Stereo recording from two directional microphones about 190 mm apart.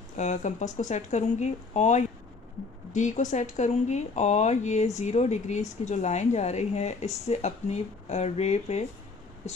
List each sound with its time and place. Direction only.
0.2 s speech: 40° left (ahead or behind)